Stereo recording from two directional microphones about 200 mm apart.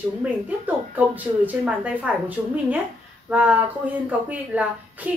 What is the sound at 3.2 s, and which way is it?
Speech, 5° right (ahead or behind).